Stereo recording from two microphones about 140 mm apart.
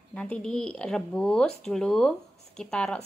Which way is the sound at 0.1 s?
5° left (ahead or behind).